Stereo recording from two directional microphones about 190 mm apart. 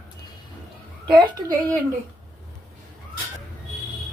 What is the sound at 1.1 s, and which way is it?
Speech, 20° right (ahead or behind).